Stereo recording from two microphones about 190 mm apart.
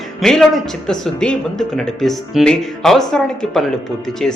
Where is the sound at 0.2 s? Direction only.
Centre (ahead or behind).